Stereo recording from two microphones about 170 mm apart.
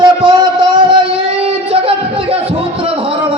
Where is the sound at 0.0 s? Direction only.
25° right (ahead or behind).